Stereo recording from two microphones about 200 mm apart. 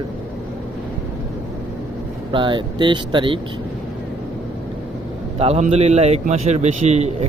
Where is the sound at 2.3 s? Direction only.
25° right (ahead or behind).